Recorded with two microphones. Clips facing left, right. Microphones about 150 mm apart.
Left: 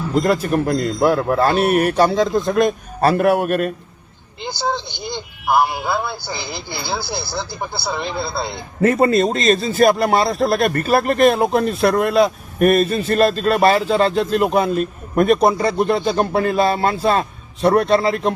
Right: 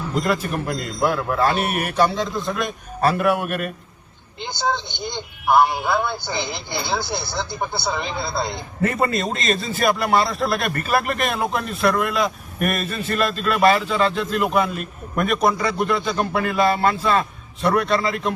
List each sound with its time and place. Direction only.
0.2 s a man's voice: 40° left (ahead or behind)
4.9 s speech: 5° left (ahead or behind)
8.8 s a man's voice: 40° left (ahead or behind)